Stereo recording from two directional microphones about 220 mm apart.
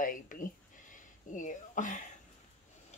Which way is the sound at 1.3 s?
35° left (ahead or behind).